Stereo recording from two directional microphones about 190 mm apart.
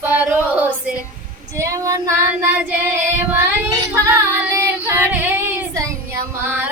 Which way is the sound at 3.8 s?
15° right (ahead or behind).